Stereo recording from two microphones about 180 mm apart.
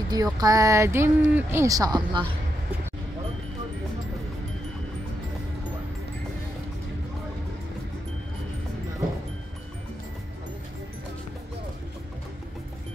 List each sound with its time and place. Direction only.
0.1 s speech: 20° right (ahead or behind)